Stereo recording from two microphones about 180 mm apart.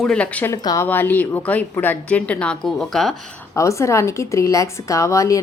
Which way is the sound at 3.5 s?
15° left (ahead or behind).